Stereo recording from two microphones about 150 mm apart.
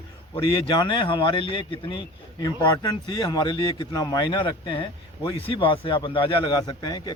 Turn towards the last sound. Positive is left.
turn(degrees=30)  # may be behind; listen again after turning